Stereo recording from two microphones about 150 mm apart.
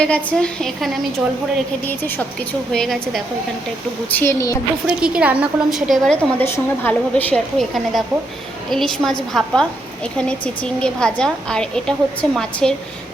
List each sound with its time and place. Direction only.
0.0 s a woman's voice: 5° left (ahead or behind)
1.9 s a woman's voice: 15° left (ahead or behind)
4.1 s a woman's voice: 15° left (ahead or behind)
4.9 s a woman's voice: 5° right (ahead or behind)